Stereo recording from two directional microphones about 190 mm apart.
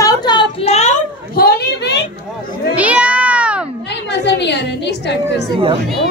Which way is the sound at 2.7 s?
5° right (ahead or behind).